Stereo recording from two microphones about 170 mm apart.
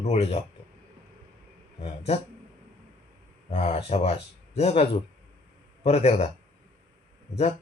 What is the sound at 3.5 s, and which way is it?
Speech, 35° left (ahead or behind).